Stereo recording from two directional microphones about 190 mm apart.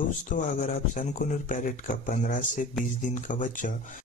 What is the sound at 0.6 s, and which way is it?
Speech, 45° left (ahead or behind).